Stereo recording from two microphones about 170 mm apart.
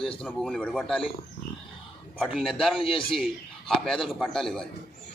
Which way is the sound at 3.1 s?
Centre (ahead or behind).